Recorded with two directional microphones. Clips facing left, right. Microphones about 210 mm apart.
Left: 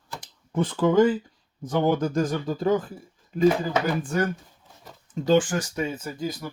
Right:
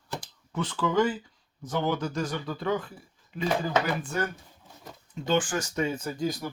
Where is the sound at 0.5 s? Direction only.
50° left (ahead or behind).